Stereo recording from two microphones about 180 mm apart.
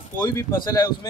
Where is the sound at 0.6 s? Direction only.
15° left (ahead or behind).